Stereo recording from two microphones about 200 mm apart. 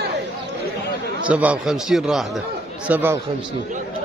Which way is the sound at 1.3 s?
5° right (ahead or behind).